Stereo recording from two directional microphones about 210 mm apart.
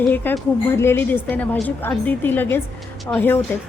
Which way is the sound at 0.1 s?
10° left (ahead or behind).